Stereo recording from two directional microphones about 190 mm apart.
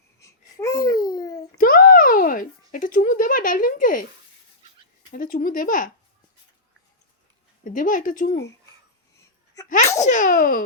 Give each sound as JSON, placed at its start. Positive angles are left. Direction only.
{"t": 0.2, "sound": "babbling", "side_deg": 15}
{"t": 1.5, "sound": "a sound", "side_deg": 50}
{"t": 5.1, "sound": "speech", "side_deg": 50}
{"t": 7.6, "sound": "speech", "side_deg": 45}
{"t": 10.0, "sound": "speech", "side_deg": 40}